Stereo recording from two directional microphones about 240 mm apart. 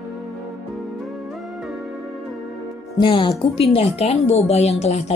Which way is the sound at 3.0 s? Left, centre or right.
Centre.